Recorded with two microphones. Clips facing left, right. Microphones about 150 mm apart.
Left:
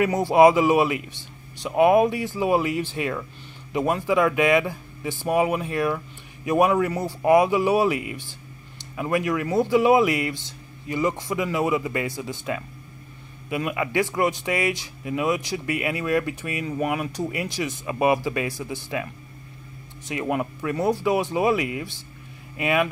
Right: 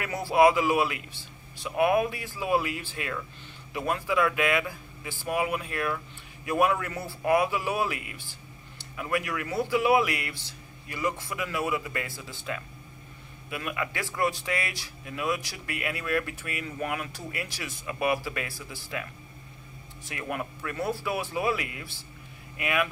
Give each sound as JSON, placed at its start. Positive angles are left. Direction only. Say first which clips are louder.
{"t": 0.0, "sound": "a man's voice", "louder": "left 6 dB", "side_deg": 20}
{"t": 6.9, "sound": "speech", "louder": "left 8 dB", "side_deg": 40}
{"t": 7.2, "sound": "a man's voice", "louder": "left 7 dB", "side_deg": 20}
{"t": 20.1, "sound": "a man's voice", "louder": "left 8 dB", "side_deg": 20}